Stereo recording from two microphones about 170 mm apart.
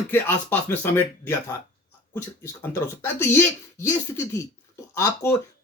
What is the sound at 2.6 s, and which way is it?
Speech, 15° left (ahead or behind).